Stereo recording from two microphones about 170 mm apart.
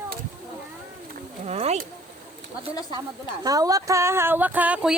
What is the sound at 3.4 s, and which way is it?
Speech, 20° right (ahead or behind).